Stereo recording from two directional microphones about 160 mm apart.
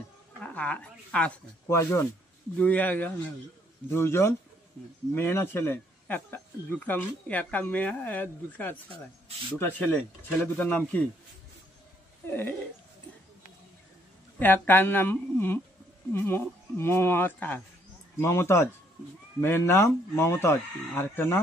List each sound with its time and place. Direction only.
0.4 s speech: 10° left (ahead or behind)
12.3 s speech: 10° left (ahead or behind)
14.4 s speech: 10° left (ahead or behind)